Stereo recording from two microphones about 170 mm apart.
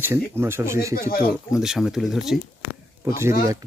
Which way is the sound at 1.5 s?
5° right (ahead or behind).